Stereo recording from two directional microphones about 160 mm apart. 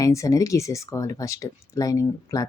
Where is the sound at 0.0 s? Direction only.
20° left (ahead or behind).